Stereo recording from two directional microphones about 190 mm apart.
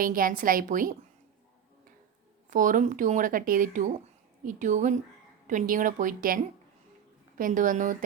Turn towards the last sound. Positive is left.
turn(degrees=-45)  # may be behind; listen again after turning